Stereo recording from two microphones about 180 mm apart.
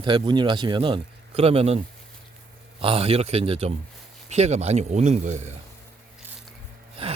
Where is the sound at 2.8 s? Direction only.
30° right (ahead or behind).